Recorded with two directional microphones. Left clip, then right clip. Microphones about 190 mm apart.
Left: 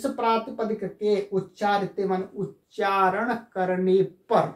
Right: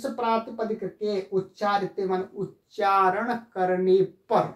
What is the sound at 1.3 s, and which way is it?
Speech, 20° right (ahead or behind).